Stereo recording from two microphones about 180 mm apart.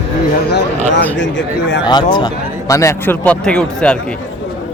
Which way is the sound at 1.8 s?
25° left (ahead or behind).